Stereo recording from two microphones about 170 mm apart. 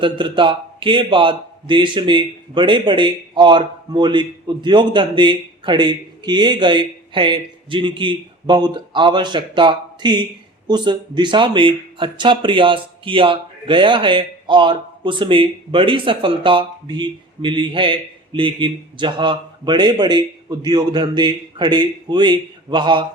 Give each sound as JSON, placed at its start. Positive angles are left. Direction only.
{"t": 0.0, "sound": "speech", "side_deg": -30}